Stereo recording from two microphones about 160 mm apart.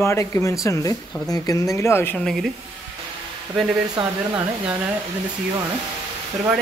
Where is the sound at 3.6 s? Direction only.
Centre (ahead or behind).